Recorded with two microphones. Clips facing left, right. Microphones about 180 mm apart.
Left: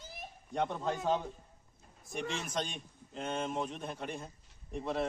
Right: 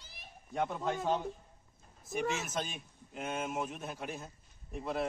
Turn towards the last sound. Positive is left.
turn(degrees=-5)  # may be behind; listen again after turning